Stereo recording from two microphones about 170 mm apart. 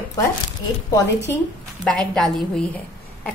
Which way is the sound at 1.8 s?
5° left (ahead or behind).